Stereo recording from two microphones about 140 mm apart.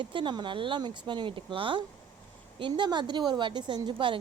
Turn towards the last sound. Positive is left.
turn(degrees=-35)  # may be behind; listen again after turning